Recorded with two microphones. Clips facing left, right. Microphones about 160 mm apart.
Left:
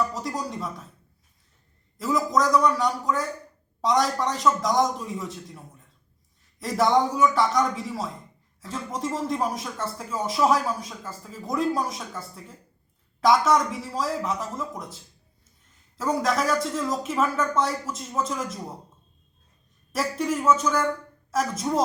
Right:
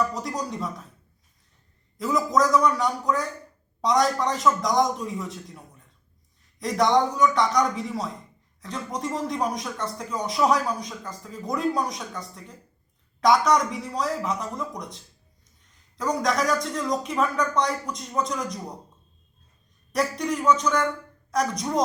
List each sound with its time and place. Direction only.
0.0 s speech: centre (ahead or behind)
2.0 s speech: centre (ahead or behind)
19.9 s speech: 5° left (ahead or behind)